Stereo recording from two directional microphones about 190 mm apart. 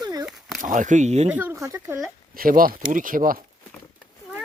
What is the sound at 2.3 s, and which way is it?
Speech, 50° right (ahead or behind).